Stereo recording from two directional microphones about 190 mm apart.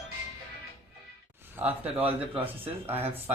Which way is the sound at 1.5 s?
10° right (ahead or behind).